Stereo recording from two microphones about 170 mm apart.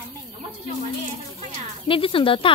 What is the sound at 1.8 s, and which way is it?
Speech, 30° left (ahead or behind).